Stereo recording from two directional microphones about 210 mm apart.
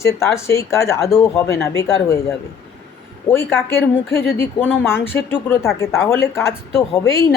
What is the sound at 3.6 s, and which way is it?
A woman's voice, 10° left (ahead or behind).